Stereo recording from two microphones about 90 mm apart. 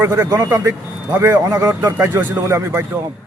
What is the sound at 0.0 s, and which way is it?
A man's voice, 30° right (ahead or behind).